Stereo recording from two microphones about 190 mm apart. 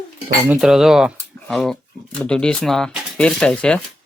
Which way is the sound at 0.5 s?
Centre (ahead or behind).